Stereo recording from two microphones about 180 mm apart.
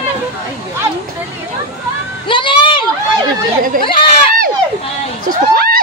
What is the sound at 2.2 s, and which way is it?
Speech, 25° left (ahead or behind).